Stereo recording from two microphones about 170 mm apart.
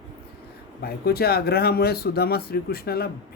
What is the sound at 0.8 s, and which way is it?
Speech, 65° left (ahead or behind).